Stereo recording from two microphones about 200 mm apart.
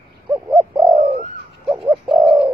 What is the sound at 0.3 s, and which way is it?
Bird, 10° right (ahead or behind).